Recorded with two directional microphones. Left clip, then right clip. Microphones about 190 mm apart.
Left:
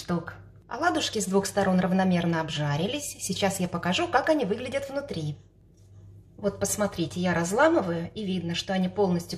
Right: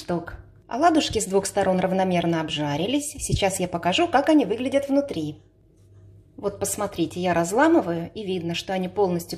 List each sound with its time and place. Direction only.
0.0 s a woman's voice: 15° right (ahead or behind)
6.4 s a woman's voice: 20° right (ahead or behind)